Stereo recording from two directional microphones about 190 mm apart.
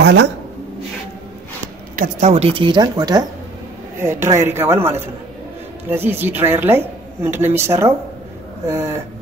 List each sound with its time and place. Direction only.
0.0 s speech: 65° right (ahead or behind)
2.0 s a woman's voice: 40° right (ahead or behind); by 9.0 s 15° right (ahead or behind)